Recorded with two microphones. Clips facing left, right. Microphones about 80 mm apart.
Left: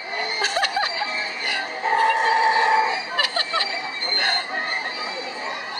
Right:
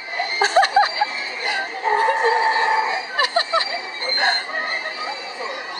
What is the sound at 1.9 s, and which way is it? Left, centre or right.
Music, centre.